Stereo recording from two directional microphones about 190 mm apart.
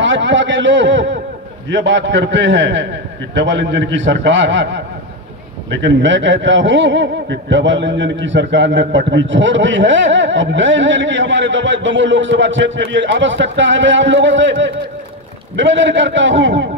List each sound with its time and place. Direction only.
0.0 s a man's voice: 75° right (ahead or behind)